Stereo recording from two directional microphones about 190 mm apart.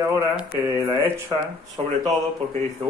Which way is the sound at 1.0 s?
15° right (ahead or behind).